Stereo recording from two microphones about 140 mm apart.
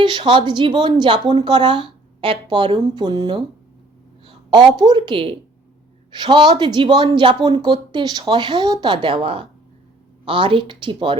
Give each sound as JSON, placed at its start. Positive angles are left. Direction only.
{"t": 0.0, "sound": "speech", "side_deg": -35}
{"t": 4.5, "sound": "speech", "side_deg": -30}